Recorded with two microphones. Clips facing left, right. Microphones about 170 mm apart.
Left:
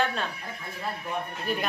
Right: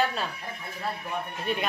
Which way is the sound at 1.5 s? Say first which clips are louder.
Even; centre (ahead or behind).